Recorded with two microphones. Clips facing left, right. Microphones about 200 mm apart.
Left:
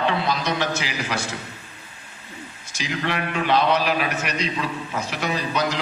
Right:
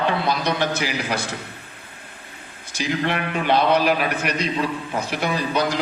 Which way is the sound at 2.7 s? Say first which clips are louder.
Right 3 dB; 50° right (ahead or behind).